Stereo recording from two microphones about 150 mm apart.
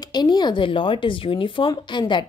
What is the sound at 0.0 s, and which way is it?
A woman's voice, 30° left (ahead or behind).